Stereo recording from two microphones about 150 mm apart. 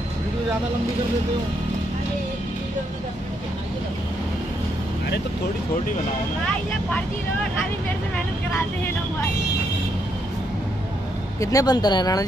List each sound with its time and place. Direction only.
11.3 s speech: 20° left (ahead or behind)